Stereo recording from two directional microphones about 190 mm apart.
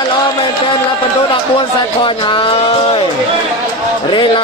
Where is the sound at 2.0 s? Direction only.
25° left (ahead or behind).